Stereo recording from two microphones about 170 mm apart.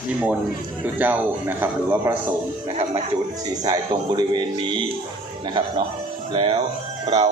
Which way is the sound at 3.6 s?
25° right (ahead or behind).